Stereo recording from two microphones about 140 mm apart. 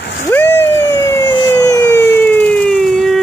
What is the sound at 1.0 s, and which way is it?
Emergency vehicle, 30° left (ahead or behind).